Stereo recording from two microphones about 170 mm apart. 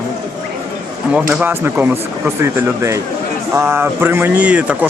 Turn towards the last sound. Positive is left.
turn(degrees=-5)  # may be behind; listen again after turning